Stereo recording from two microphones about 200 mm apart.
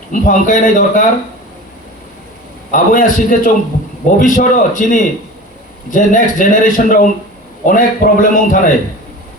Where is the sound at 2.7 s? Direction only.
40° left (ahead or behind).